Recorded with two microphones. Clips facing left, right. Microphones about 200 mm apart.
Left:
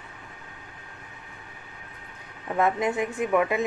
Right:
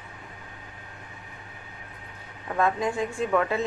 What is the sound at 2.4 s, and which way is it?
A woman's voice, 20° left (ahead or behind).